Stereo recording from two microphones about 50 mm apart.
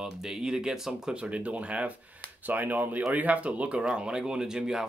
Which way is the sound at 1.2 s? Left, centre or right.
Right.